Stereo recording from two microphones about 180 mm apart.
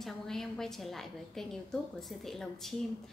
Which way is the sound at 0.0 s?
Centre (ahead or behind).